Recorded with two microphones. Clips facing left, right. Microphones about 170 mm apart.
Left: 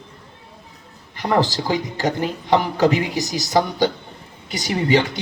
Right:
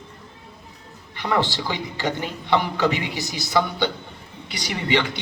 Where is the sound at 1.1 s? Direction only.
40° left (ahead or behind).